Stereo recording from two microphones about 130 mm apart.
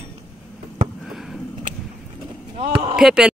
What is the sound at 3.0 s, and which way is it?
Speech, 5° right (ahead or behind).